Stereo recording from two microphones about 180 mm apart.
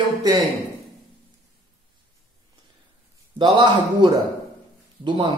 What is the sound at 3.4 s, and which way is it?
A man's voice, 25° right (ahead or behind).